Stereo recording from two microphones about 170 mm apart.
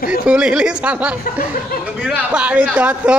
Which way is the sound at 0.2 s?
5° right (ahead or behind).